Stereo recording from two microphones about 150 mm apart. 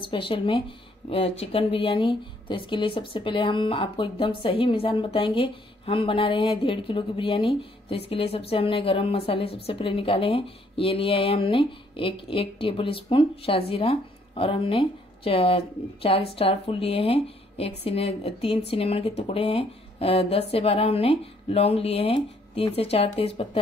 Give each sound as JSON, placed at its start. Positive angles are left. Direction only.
{"t": 0.0, "sound": "speech", "side_deg": 35}